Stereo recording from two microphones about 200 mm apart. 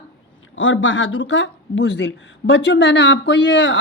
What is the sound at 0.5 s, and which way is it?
Speech, 75° left (ahead or behind).